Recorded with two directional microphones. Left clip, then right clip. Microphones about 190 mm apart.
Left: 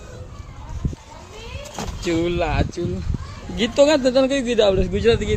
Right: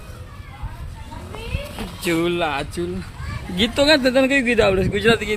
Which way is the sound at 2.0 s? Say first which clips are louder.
Right 1 dB; 10° right (ahead or behind).